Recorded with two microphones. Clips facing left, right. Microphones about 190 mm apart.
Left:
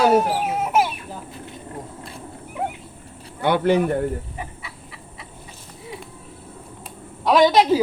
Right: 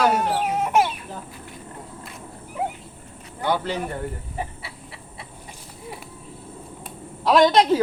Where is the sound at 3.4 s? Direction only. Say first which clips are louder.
Left 7 dB; 60° left (ahead or behind).